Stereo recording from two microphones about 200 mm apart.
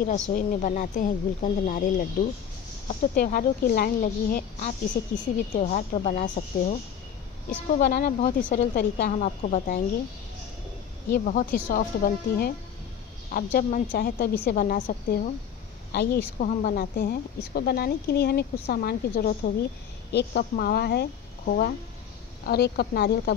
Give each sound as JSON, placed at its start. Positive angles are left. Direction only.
{"t": 0.0, "sound": "a woman's voice", "side_deg": 45}
{"t": 4.6, "sound": "a woman's voice", "side_deg": 35}
{"t": 9.1, "sound": "a woman's voice", "side_deg": 40}
{"t": 11.1, "sound": "a woman's voice", "side_deg": 45}
{"t": 16.3, "sound": "a woman's voice", "side_deg": 40}